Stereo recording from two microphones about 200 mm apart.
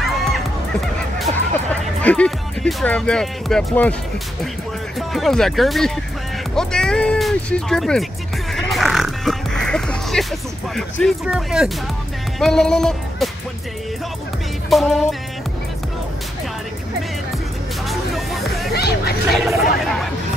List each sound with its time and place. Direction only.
0.1 s music: centre (ahead or behind)
2.0 s speech: 5° left (ahead or behind)
4.9 s speech: centre (ahead or behind)
8.5 s music: centre (ahead or behind)
10.8 s speech: centre (ahead or behind)
14.7 s speech: centre (ahead or behind)
17.8 s hubbub: centre (ahead or behind)
18.7 s a sound: 55° left (ahead or behind)
19.3 s chatter: centre (ahead or behind)